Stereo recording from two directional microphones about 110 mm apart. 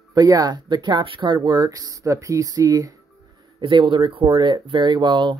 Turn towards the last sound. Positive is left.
turn(degrees=-45)  # may be behind; listen again after turning